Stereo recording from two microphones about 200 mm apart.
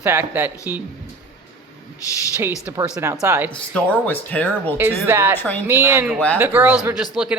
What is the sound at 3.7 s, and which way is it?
Speech, 5° left (ahead or behind).